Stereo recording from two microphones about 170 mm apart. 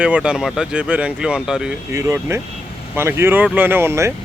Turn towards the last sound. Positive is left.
turn(degrees=-15)  # may be behind; listen again after turning